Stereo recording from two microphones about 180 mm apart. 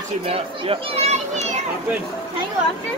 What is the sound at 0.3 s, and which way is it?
A child's voice, 35° right (ahead or behind).